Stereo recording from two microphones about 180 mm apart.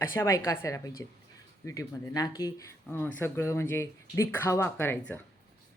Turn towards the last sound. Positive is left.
turn(degrees=10)  # may be behind; listen again after turning